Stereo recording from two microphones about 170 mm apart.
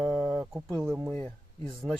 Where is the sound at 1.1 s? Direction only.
10° left (ahead or behind).